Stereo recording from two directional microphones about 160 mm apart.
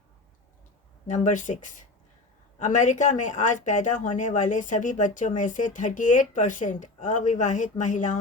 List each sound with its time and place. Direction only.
1.0 s speech: 50° left (ahead or behind)